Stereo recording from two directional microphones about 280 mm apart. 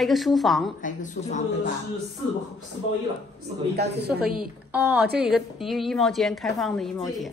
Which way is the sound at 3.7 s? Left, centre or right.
Right.